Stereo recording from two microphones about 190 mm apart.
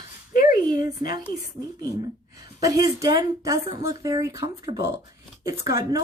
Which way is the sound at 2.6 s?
20° right (ahead or behind).